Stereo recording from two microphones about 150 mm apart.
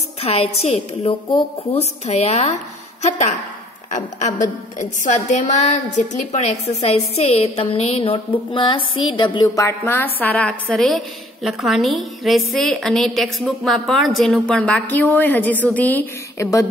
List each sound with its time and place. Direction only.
0.2 s a woman's voice: 40° left (ahead or behind)
4.4 s a woman's voice: 55° left (ahead or behind); by 9.5 s 30° left (ahead or behind)
9.6 s a woman's voice: 15° left (ahead or behind)
16.3 s speech: 20° left (ahead or behind)